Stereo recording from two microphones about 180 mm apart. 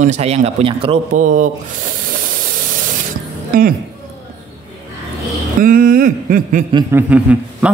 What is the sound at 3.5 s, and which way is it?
Speech, 50° right (ahead or behind).